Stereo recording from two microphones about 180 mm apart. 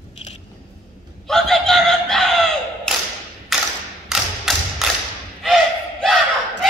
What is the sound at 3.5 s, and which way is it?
Mechanisms, centre (ahead or behind).